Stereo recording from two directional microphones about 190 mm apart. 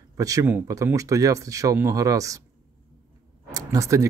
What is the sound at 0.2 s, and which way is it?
Speech, 15° right (ahead or behind).